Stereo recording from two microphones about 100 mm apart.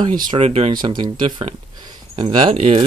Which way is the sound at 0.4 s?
90° right.